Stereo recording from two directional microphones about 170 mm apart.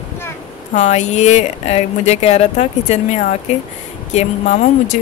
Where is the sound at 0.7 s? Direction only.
45° left (ahead or behind).